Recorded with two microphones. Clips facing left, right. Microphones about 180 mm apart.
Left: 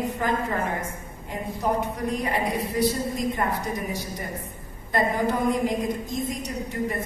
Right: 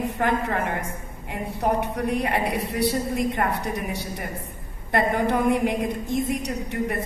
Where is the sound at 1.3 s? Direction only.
65° right (ahead or behind).